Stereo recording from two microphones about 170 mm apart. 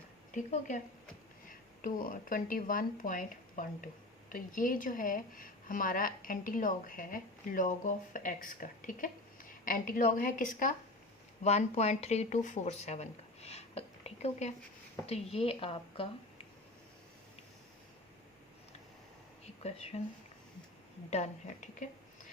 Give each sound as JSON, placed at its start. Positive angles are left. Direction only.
{"t": 1.5, "sound": "speech", "side_deg": 55}
{"t": 11.4, "sound": "speech", "side_deg": 40}
{"t": 19.9, "sound": "speech", "side_deg": 40}